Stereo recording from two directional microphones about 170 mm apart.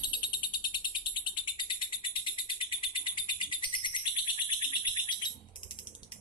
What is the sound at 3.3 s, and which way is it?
Bird, 25° left (ahead or behind).